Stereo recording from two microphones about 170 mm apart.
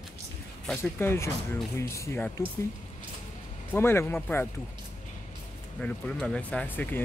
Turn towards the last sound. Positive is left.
turn(degrees=10)  # may be behind; listen again after turning